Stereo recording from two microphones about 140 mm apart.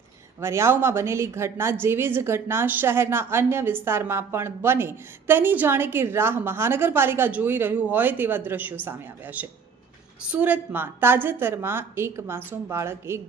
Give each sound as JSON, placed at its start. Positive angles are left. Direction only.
{"t": 0.3, "sound": "a woman's voice", "side_deg": -20}